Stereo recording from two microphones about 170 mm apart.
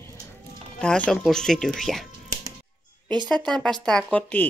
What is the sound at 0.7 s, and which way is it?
Speech, 5° left (ahead or behind).